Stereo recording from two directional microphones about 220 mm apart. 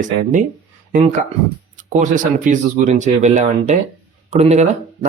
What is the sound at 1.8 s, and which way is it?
Speech, 35° right (ahead or behind).